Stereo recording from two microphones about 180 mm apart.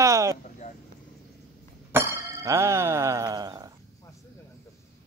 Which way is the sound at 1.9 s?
15° right (ahead or behind).